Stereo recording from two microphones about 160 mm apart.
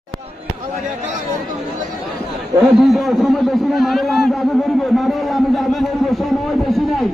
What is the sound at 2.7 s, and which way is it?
A man's voice, centre (ahead or behind).